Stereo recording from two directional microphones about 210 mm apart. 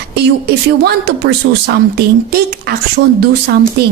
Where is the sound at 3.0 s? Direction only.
55° right (ahead or behind).